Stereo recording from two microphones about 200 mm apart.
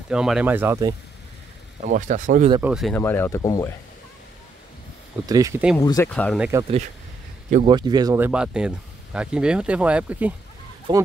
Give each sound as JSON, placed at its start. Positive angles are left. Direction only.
{"t": 0.1, "sound": "speech", "side_deg": -5}
{"t": 1.9, "sound": "speech", "side_deg": -40}
{"t": 2.6, "sound": "speech", "side_deg": -5}
{"t": 2.9, "sound": "speech", "side_deg": 10}
{"t": 5.3, "sound": "speech", "side_deg": -15}
{"t": 5.8, "sound": "speech", "side_deg": 15}
{"t": 6.1, "sound": "speech", "side_deg": 5}
{"t": 7.6, "sound": "speech", "side_deg": -20}
{"t": 10.9, "sound": "speech", "side_deg": -25}